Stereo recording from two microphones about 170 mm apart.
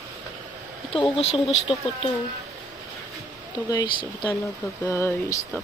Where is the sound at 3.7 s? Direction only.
25° left (ahead or behind).